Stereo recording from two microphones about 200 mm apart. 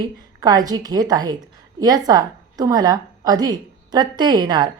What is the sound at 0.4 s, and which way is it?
A woman's voice, 20° right (ahead or behind).